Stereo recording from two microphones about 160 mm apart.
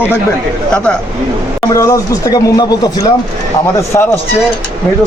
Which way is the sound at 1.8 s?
20° left (ahead or behind).